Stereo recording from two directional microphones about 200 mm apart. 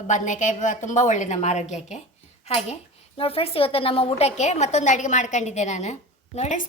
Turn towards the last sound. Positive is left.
turn(degrees=35)  # may be behind; listen again after turning